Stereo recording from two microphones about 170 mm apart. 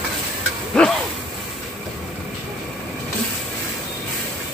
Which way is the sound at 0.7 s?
5° left (ahead or behind).